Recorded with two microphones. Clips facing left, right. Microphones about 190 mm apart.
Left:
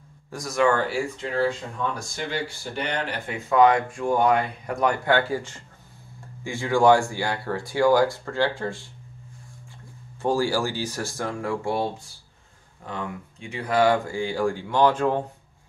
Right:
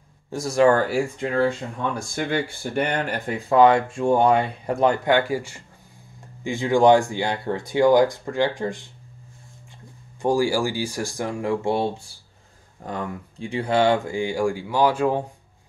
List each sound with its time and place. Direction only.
0.3 s speech: 30° right (ahead or behind)
2.0 s speech: 55° right (ahead or behind)
3.4 s speech: 30° right (ahead or behind)
10.2 s speech: 15° right (ahead or behind)
12.8 s speech: 35° right (ahead or behind); by 15.2 s 10° right (ahead or behind)